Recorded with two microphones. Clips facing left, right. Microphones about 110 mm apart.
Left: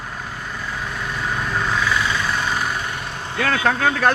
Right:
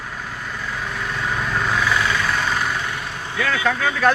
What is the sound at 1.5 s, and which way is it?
Vehicle, centre (ahead or behind).